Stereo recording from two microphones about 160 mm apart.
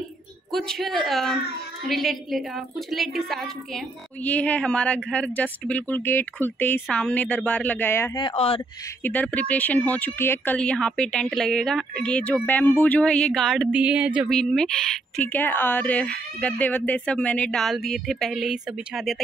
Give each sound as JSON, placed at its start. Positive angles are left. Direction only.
{"t": 0.5, "sound": "a woman's voice", "side_deg": 0}
{"t": 8.2, "sound": "speech", "side_deg": 35}
{"t": 9.0, "sound": "a woman's voice", "side_deg": 10}